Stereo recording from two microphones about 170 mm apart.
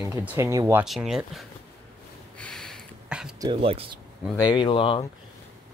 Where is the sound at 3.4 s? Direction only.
30° right (ahead or behind).